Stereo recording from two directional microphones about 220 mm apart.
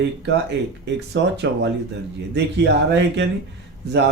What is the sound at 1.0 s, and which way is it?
Speech, 50° right (ahead or behind).